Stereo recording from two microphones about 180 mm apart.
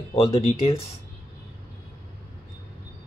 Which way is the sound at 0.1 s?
30° left (ahead or behind).